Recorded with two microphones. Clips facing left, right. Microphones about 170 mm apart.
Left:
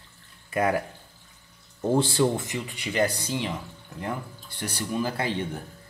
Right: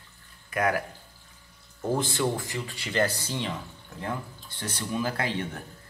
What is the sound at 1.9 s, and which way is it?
Speech, 30° left (ahead or behind).